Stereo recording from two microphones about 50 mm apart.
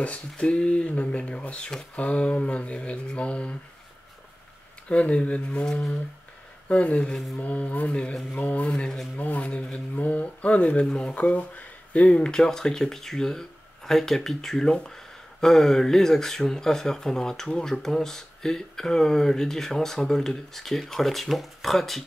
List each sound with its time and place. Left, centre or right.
0.0 s speech: left
4.8 s speech: left
5.7 s speech: centre
6.7 s speech: left
8.1 s speech: centre
8.4 s speech: left
8.6 s speech: centre
9.1 s speech: left
9.4 s speech: centre
9.9 s speech: left
10.9 s speech: centre
11.1 s speech: left; by 22.0 s centre